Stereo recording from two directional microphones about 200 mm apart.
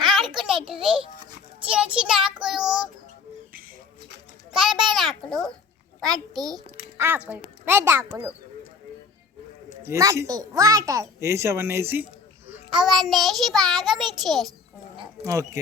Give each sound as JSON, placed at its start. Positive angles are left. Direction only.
{"t": 0.0, "sound": "a sound", "side_deg": 0}
{"t": 1.6, "sound": "a child's voice", "side_deg": -5}
{"t": 4.5, "sound": "a child's voice", "side_deg": -5}
{"t": 6.3, "sound": "a child's voice", "side_deg": -20}
{"t": 9.8, "sound": "a child's voice", "side_deg": -15}
{"t": 15.2, "sound": "a child's voice", "side_deg": -15}